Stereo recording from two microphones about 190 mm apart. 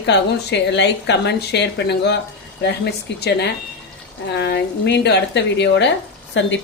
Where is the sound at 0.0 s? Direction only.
65° left (ahead or behind).